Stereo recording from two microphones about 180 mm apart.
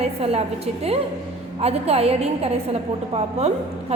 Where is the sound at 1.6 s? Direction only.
35° right (ahead or behind).